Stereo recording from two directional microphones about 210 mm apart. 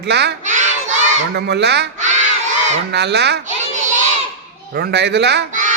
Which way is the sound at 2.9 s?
55° right (ahead or behind).